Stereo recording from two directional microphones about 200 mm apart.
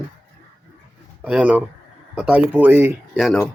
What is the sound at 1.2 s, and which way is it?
Speech, 5° right (ahead or behind).